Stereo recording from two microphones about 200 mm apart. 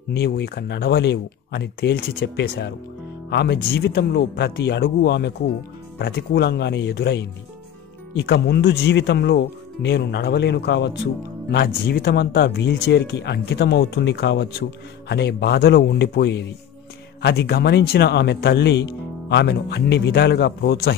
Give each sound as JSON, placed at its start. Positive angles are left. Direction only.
{"t": 0.1, "sound": "speech", "side_deg": 55}